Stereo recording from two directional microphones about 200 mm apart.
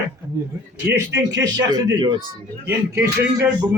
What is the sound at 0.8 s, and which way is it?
A man's voice, 10° right (ahead or behind).